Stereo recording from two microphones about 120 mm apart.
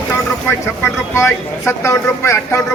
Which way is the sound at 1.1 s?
20° left (ahead or behind).